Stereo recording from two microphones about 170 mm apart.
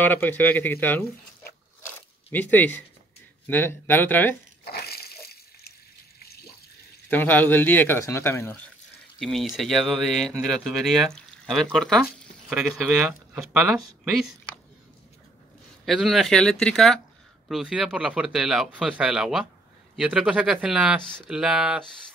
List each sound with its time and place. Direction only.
0.0 s speech: 10° left (ahead or behind)
2.3 s speech: 10° left (ahead or behind)
4.6 s water: 65° left (ahead or behind)
7.1 s speech: 10° left (ahead or behind)
9.2 s speech: centre (ahead or behind)
15.8 s speech: centre (ahead or behind)